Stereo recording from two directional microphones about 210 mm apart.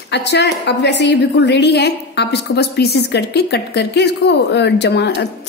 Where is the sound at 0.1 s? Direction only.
55° left (ahead or behind).